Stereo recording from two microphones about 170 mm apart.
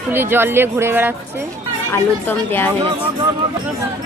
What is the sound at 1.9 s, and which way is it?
Speech, 10° left (ahead or behind).